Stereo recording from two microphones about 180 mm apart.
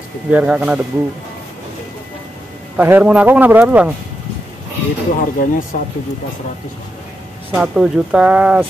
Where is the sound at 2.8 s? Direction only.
10° right (ahead or behind).